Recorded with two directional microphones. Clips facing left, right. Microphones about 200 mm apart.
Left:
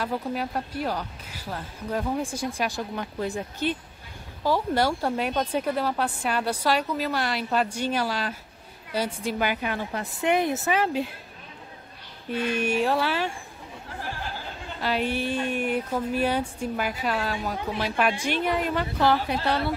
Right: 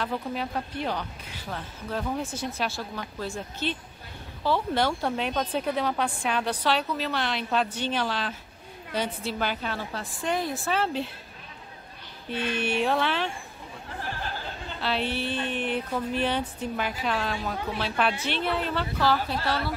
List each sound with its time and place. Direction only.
0.0 s speech: 10° left (ahead or behind)
12.3 s speech: 10° left (ahead or behind)
14.8 s speech: 10° left (ahead or behind)